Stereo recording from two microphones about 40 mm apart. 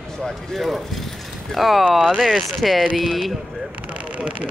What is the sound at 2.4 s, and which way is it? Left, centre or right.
Speech, centre.